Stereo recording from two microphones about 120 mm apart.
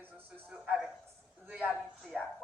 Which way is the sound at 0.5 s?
10° right (ahead or behind).